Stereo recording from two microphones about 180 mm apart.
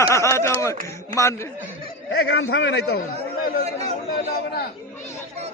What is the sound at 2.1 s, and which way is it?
Speech, 70° left (ahead or behind).